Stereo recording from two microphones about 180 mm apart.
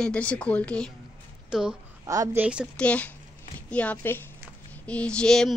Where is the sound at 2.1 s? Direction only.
20° right (ahead or behind).